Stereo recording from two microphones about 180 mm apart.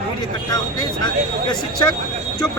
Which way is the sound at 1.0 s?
25° left (ahead or behind).